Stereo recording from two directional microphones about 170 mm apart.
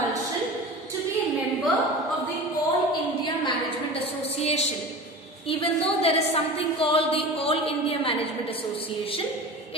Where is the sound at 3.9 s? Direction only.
35° left (ahead or behind).